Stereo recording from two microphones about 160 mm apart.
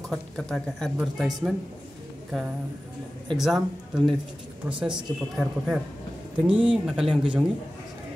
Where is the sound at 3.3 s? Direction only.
Centre (ahead or behind).